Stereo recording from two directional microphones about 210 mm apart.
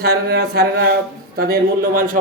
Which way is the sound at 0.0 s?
50° right (ahead or behind).